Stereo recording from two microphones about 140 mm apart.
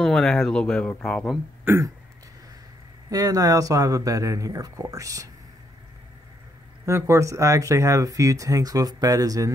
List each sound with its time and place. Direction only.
0.0 s speech: 5° left (ahead or behind)
1.6 s speech: 15° right (ahead or behind)
3.1 s speech: 25° right (ahead or behind)
6.9 s speech: 20° right (ahead or behind)